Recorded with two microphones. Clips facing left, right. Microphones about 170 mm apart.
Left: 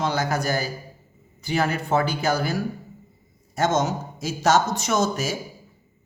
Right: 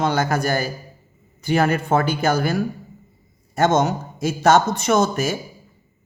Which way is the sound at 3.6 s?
60° right (ahead or behind).